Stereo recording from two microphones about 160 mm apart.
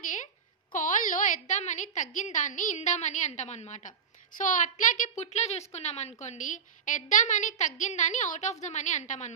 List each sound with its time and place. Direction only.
0.7 s a woman's voice: 55° left (ahead or behind)